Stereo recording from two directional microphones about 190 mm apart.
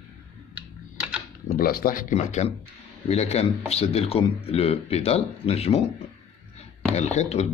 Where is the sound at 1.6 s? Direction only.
50° left (ahead or behind); by 5.9 s 35° left (ahead or behind).